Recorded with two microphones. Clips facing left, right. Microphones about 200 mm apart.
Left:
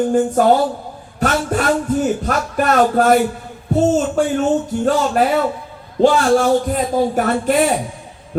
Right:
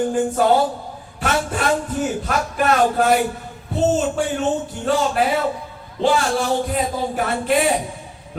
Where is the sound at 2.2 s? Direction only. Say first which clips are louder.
Left 2 dB; 45° left (ahead or behind).